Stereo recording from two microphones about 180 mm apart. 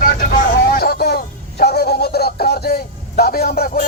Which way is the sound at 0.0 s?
50° left (ahead or behind).